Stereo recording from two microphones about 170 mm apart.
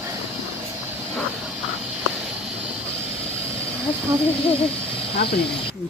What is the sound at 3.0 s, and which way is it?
Vehicle, 35° left (ahead or behind).